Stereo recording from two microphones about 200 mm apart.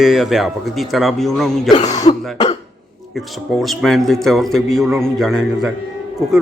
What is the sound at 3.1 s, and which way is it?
A man's voice, centre (ahead or behind).